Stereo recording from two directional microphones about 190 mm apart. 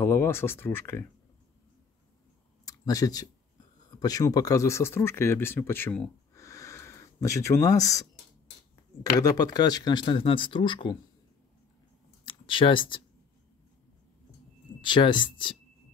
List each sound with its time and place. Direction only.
0.0 s speech: 10° left (ahead or behind)
2.6 s a sound: 20° left (ahead or behind)
4.0 s speech: 20° left (ahead or behind)
9.2 s speech: 20° left (ahead or behind)
12.3 s speech: 25° left (ahead or behind)
14.8 s speech: 25° left (ahead or behind)